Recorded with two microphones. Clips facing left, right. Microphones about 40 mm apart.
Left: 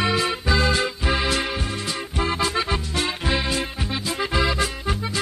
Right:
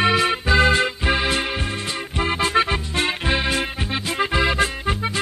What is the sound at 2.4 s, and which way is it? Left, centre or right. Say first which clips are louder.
Music: right 4 dB; right.